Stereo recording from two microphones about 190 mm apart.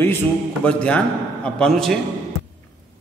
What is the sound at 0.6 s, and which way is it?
A man's voice, 5° left (ahead or behind).